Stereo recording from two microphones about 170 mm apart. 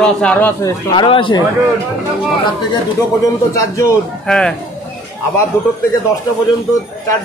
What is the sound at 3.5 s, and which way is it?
Speech, 20° left (ahead or behind).